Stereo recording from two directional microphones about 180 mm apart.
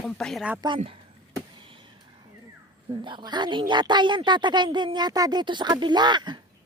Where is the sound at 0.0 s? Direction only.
Centre (ahead or behind).